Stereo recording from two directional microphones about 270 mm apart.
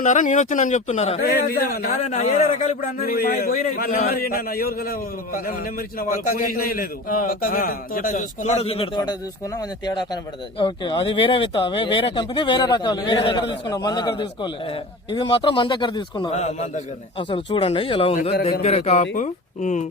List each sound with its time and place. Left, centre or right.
0.0 s a man's voice: left
6.0 s a man's voice: left